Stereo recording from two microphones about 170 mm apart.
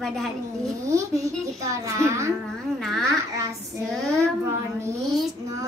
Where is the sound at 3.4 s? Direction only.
20° right (ahead or behind).